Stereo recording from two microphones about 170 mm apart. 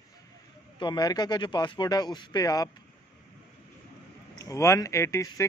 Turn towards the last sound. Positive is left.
turn(degrees=15)  # may be behind; listen again after turning